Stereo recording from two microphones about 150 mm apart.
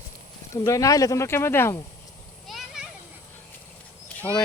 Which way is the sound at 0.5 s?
20° left (ahead or behind).